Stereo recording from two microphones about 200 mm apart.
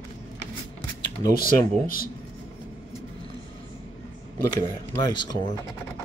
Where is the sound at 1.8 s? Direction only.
45° left (ahead or behind).